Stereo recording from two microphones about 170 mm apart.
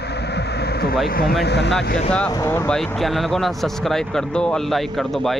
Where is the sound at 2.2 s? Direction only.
20° left (ahead or behind).